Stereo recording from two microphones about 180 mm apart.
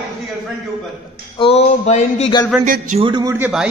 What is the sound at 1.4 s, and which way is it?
Speech, 35° left (ahead or behind).